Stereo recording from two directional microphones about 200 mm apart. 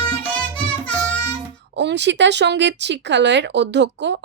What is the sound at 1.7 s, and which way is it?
Speech, 60° right (ahead or behind).